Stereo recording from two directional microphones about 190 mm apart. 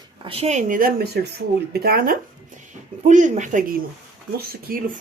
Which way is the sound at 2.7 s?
40° right (ahead or behind).